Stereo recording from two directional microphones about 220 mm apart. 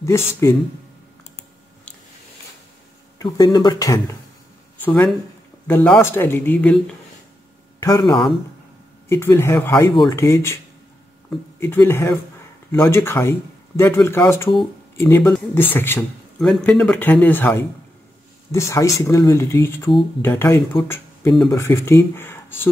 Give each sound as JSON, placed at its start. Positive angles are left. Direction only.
{"t": 0.0, "sound": "a man's voice", "side_deg": 10}
{"t": 3.2, "sound": "a man's voice", "side_deg": 15}
{"t": 7.8, "sound": "a man's voice", "side_deg": 20}